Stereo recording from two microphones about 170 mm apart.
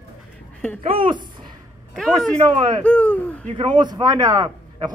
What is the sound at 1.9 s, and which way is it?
A man's voice, centre (ahead or behind).